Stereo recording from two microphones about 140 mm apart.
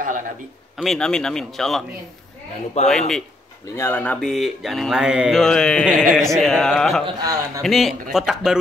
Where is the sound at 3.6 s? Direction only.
20° left (ahead or behind); by 7.1 s 5° left (ahead or behind).